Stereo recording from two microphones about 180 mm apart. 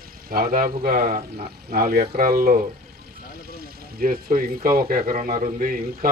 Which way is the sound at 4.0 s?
55° right (ahead or behind).